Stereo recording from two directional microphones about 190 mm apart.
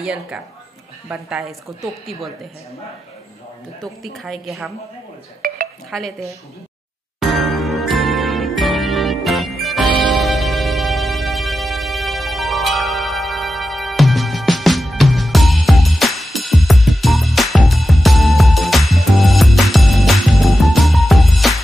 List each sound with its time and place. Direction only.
0.0 s speech: 5° right (ahead or behind)
3.8 s speech: centre (ahead or behind)
5.4 s dishes: 50° right (ahead or behind)
5.9 s speech: centre (ahead or behind)
7.2 s music: centre (ahead or behind)